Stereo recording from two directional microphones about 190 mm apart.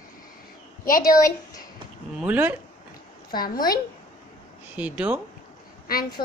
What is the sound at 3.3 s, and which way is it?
Speech, 50° left (ahead or behind).